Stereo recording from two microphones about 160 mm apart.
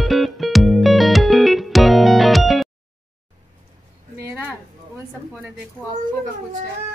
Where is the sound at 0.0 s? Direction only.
Centre (ahead or behind).